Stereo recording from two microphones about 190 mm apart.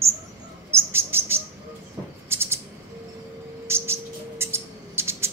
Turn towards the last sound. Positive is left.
turn(degrees=-15)  # may be behind; listen again after turning